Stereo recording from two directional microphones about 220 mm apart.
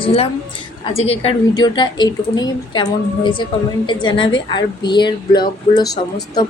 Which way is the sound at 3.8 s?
20° left (ahead or behind).